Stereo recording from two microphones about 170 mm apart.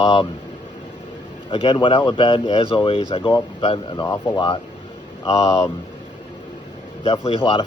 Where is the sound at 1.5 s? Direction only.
30° left (ahead or behind).